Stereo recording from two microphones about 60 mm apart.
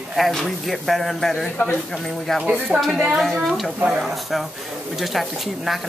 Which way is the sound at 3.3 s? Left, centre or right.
Centre.